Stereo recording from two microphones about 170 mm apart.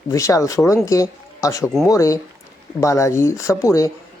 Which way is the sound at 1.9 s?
20° left (ahead or behind).